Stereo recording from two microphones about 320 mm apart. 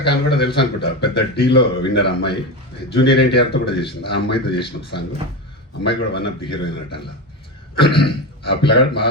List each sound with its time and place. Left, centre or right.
0.0 s a man's voice: left
6.1 s a man's voice: left